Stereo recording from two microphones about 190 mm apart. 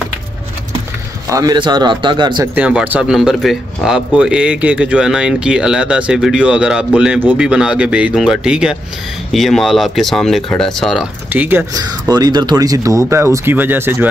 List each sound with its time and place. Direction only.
1.3 s speech: 20° right (ahead or behind)
2.5 s speech: 10° right (ahead or behind)